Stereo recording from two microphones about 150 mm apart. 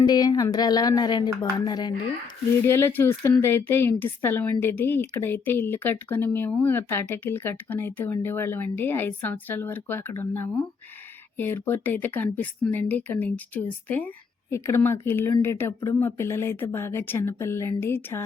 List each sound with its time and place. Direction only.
0.0 s speech: 25° left (ahead or behind)
2.6 s speech: 15° left (ahead or behind)